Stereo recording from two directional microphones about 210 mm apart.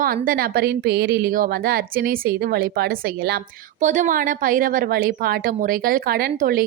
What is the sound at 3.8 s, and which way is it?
A woman's voice, 35° right (ahead or behind).